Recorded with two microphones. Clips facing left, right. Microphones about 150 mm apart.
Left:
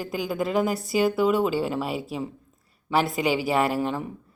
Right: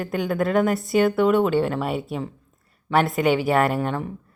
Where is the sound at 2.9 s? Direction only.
Centre (ahead or behind).